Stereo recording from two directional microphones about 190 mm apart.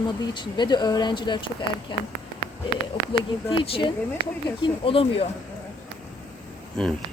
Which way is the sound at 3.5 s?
25° left (ahead or behind).